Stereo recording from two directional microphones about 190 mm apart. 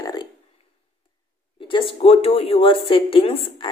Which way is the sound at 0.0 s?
20° left (ahead or behind).